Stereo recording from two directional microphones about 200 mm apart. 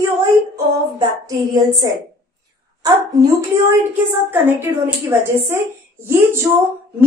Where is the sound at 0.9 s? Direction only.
20° right (ahead or behind).